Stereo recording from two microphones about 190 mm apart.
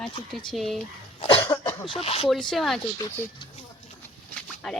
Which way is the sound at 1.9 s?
30° left (ahead or behind).